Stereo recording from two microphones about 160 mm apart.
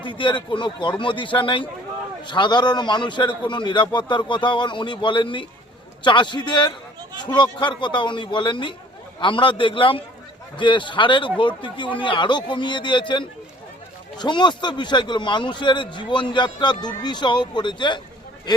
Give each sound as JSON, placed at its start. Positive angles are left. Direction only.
{"t": 0.0, "sound": "a man's voice", "side_deg": 30}